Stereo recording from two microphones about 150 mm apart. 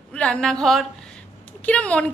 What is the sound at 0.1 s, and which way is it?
A woman's voice, 5° left (ahead or behind).